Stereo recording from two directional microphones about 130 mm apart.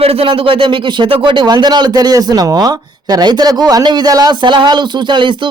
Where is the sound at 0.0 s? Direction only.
45° right (ahead or behind).